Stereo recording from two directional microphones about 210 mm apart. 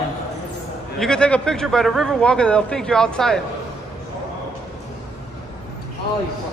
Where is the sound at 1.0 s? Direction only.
5° left (ahead or behind).